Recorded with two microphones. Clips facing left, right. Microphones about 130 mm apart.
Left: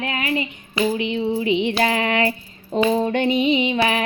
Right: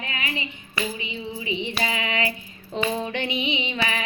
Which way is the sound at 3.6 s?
60° left (ahead or behind).